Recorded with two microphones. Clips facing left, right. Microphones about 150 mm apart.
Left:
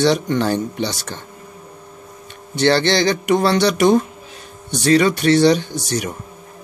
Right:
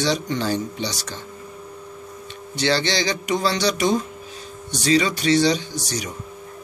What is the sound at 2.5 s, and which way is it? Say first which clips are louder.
Speech: left 6 dB; 55° left (ahead or behind).